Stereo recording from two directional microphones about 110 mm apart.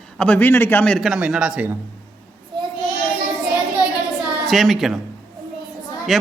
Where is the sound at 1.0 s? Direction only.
5° right (ahead or behind).